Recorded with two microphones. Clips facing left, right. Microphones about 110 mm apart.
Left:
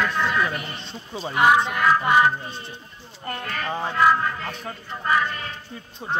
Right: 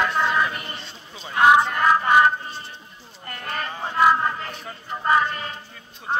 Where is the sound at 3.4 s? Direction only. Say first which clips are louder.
Left 1 dB; 30° right (ahead or behind).